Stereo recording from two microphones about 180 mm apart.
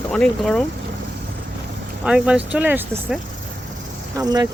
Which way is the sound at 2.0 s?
5° right (ahead or behind).